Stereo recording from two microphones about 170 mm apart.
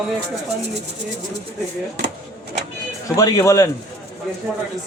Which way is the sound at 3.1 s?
20° left (ahead or behind).